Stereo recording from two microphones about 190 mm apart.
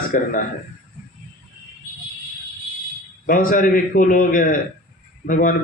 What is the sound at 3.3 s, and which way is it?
A man's voice, 45° left (ahead or behind).